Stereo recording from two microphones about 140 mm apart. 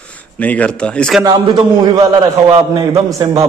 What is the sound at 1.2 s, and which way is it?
A man's voice, 30° right (ahead or behind).